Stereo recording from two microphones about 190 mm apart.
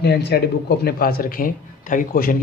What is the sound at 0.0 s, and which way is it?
Speech, 60° left (ahead or behind).